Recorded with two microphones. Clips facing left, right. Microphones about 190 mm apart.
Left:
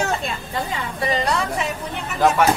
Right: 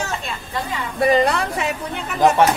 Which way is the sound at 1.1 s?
60° right (ahead or behind).